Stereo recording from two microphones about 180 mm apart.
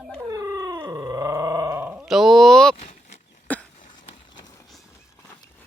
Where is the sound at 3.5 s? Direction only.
10° left (ahead or behind).